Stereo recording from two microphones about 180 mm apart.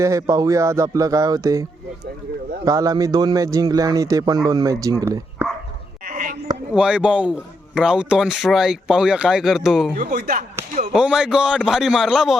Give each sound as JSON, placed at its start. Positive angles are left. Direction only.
{"t": 0.0, "sound": "speech", "side_deg": -15}
{"t": 2.6, "sound": "a man's voice", "side_deg": -20}
{"t": 6.1, "sound": "a sound", "side_deg": -50}
{"t": 6.7, "sound": "speech", "side_deg": -5}
{"t": 10.2, "sound": "speech", "side_deg": -60}
{"t": 10.9, "sound": "speech", "side_deg": -5}